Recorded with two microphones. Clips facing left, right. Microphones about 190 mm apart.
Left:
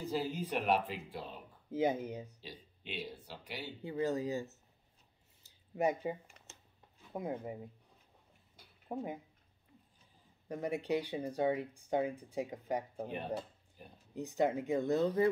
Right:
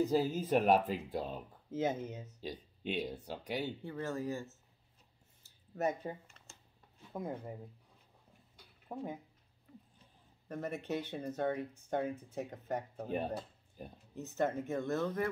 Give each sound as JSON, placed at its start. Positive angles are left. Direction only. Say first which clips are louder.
{"t": 0.0, "sound": "speech", "louder": "right 5 dB", "side_deg": -45}
{"t": 1.7, "sound": "speech", "louder": "left 2 dB", "side_deg": 15}
{"t": 2.4, "sound": "speech", "louder": "right 9 dB", "side_deg": -45}
{"t": 3.8, "sound": "speech", "louder": "left 4 dB", "side_deg": 15}
{"t": 5.4, "sound": "a sound", "louder": "left 2 dB", "side_deg": 15}
{"t": 7.1, "sound": "speech", "louder": "left 2 dB", "side_deg": 10}
{"t": 8.8, "sound": "speech", "louder": "left 2 dB", "side_deg": 15}
{"t": 10.5, "sound": "speech", "louder": "left 3 dB", "side_deg": 15}
{"t": 14.1, "sound": "speech", "louder": "left 2 dB", "side_deg": 15}